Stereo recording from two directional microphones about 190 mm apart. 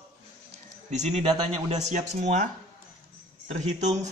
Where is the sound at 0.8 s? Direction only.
35° right (ahead or behind).